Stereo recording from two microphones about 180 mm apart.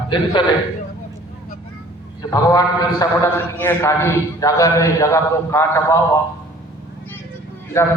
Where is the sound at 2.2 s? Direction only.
20° left (ahead or behind).